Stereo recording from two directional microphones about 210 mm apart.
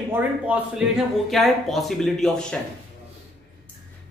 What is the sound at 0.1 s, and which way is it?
A man's voice, 5° right (ahead or behind).